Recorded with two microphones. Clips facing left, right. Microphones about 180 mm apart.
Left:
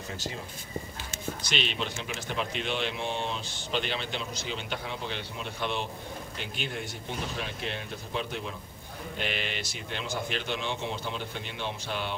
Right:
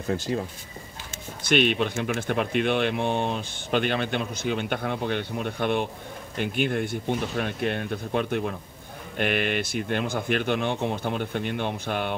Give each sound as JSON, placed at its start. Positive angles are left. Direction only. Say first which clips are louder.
{"t": 1.4, "sound": "speech", "louder": "right 13 dB", "side_deg": -55}